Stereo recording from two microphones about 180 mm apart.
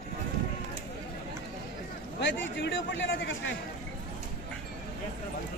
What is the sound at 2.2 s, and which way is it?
Speech, 85° left.